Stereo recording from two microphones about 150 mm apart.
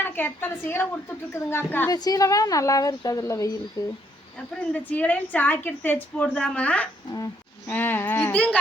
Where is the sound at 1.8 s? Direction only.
25° left (ahead or behind).